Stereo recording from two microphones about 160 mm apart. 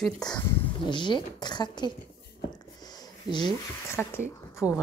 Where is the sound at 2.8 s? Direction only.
25° left (ahead or behind).